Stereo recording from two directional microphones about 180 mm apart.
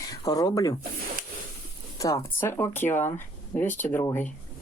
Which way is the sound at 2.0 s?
15° left (ahead or behind).